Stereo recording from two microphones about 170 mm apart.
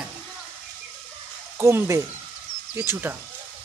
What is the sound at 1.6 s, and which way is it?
Speech, 15° right (ahead or behind).